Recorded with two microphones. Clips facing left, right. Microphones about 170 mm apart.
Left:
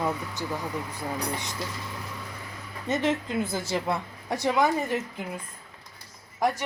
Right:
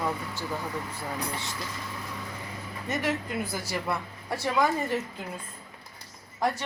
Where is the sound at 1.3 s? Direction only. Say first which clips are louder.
Left 2 dB; 20° left (ahead or behind).